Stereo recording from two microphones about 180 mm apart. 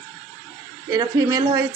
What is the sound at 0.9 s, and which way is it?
Speech, 20° right (ahead or behind).